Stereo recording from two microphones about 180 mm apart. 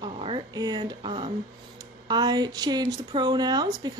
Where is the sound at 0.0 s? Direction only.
25° right (ahead or behind).